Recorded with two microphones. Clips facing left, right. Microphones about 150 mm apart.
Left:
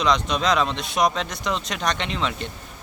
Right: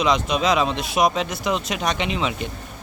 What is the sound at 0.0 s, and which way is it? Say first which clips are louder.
Speech: right 2 dB; 5° right (ahead or behind).